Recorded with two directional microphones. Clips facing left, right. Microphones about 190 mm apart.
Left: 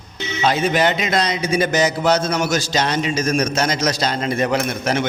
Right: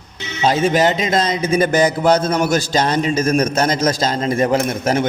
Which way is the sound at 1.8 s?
50° right (ahead or behind).